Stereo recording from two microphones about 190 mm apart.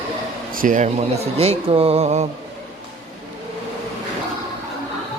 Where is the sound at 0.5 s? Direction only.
45° right (ahead or behind).